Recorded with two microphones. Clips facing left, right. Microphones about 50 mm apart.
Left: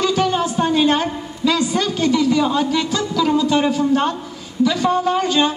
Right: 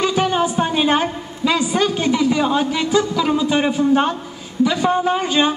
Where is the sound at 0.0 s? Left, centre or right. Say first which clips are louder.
Even; right.